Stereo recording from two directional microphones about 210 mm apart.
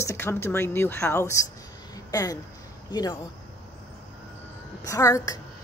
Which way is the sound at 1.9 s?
15° left (ahead or behind).